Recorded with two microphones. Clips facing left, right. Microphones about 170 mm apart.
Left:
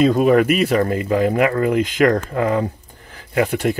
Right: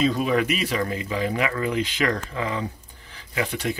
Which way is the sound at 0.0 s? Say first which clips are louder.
Left 8 dB; 50° left (ahead or behind).